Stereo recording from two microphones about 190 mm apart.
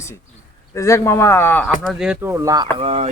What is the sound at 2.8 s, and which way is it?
Speech, 30° right (ahead or behind).